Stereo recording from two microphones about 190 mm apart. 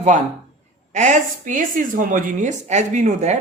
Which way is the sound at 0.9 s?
40° right (ahead or behind).